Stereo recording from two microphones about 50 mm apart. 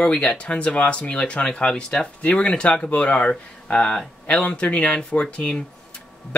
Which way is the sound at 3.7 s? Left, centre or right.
Centre.